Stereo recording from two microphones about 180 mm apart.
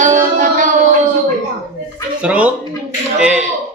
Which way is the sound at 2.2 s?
5° right (ahead or behind).